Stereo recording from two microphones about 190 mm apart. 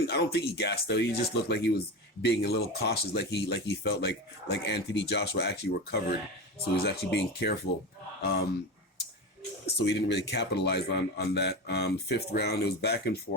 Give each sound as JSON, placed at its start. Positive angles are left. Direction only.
{"t": 0.1, "sound": "speech", "side_deg": 60}
{"t": 9.8, "sound": "speech", "side_deg": 65}